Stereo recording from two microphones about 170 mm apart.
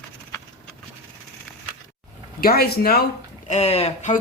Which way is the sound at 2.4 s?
65° left (ahead or behind).